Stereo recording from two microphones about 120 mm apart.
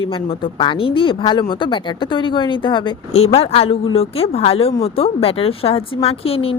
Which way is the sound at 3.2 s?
55° left (ahead or behind).